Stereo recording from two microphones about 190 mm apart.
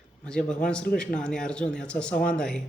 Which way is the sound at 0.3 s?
5° left (ahead or behind).